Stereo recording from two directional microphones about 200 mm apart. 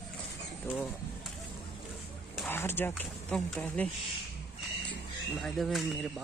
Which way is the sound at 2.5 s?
10° left (ahead or behind).